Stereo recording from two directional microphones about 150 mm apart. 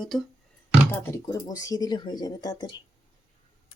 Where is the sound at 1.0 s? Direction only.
20° left (ahead or behind).